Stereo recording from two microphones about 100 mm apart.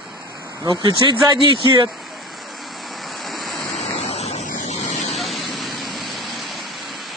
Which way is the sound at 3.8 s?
90° left.